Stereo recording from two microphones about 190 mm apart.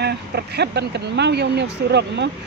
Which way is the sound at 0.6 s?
60° right (ahead or behind).